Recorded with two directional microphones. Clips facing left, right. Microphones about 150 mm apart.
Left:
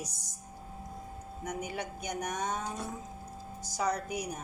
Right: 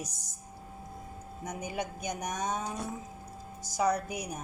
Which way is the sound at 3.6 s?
10° right (ahead or behind).